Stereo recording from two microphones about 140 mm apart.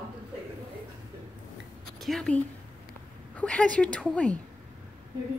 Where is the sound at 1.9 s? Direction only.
Centre (ahead or behind).